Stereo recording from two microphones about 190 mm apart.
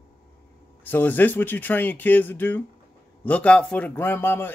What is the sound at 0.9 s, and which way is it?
A man's voice, 10° left (ahead or behind).